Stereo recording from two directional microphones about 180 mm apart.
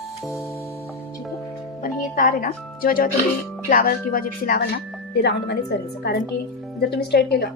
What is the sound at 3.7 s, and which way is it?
Speech, 50° left (ahead or behind).